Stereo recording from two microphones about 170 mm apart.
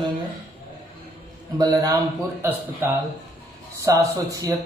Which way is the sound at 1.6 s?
20° right (ahead or behind).